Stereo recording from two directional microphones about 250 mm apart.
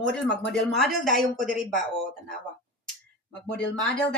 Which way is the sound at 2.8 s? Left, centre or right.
Centre.